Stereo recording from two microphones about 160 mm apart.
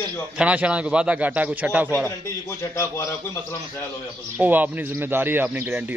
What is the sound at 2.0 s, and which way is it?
A man's voice, 15° left (ahead or behind).